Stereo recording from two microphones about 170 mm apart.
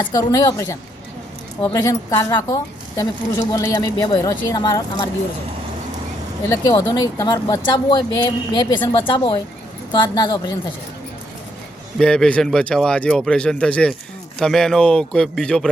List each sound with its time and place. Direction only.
0.0 s a woman's voice: 20° left (ahead or behind)
6.7 s a woman's voice: 25° left (ahead or behind)
11.9 s speech: 5° left (ahead or behind)